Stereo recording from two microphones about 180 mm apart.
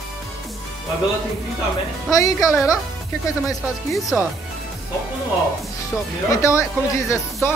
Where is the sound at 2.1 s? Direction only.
20° left (ahead or behind).